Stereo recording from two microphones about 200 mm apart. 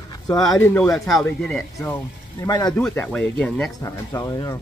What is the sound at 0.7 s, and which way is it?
Speech, 5° left (ahead or behind).